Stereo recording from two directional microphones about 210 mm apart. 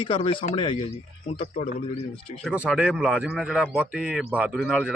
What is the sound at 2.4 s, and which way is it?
Speech, 5° right (ahead or behind).